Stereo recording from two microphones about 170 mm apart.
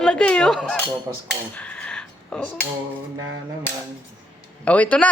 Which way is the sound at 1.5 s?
5° left (ahead or behind).